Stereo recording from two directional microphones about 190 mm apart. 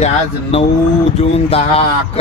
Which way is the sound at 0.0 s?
30° left (ahead or behind).